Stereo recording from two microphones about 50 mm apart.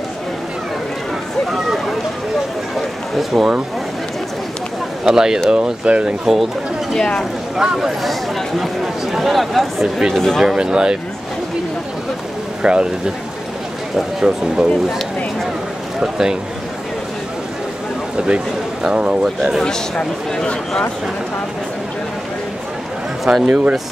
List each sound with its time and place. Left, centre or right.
2.7 s a sound: centre
5.0 s speech: centre
6.2 s speech: centre
7.0 s speech: centre
7.5 s speech: centre
10.4 s speech: centre
12.6 s speech: centre
14.2 s speech: centre
16.0 s speech: centre
18.1 s a sound: centre
19.6 s speech: centre
23.2 s speech: centre